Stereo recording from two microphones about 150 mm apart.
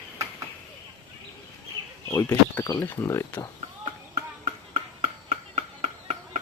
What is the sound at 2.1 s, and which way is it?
Speech, 15° left (ahead or behind).